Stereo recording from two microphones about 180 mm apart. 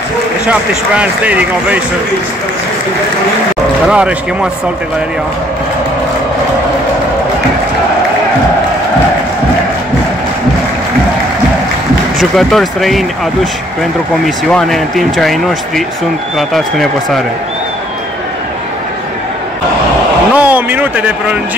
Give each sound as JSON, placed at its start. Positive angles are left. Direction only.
{"t": 0.5, "sound": "speech", "side_deg": -5}
{"t": 3.8, "sound": "speech", "side_deg": -5}
{"t": 12.2, "sound": "speech", "side_deg": 0}
{"t": 14.2, "sound": "speech", "side_deg": 0}
{"t": 20.3, "sound": "speech", "side_deg": -10}